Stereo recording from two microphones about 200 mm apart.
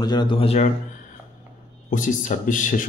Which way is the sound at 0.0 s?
20° left (ahead or behind).